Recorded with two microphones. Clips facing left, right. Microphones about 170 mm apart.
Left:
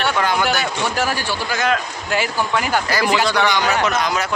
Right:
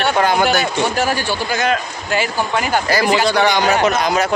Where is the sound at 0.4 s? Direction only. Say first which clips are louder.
Right 4 dB; 20° right (ahead or behind).